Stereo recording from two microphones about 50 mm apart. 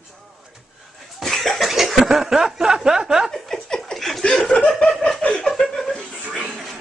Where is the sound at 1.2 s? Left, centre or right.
Centre.